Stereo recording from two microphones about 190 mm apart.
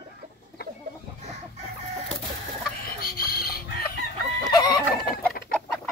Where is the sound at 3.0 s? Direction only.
50° left (ahead or behind).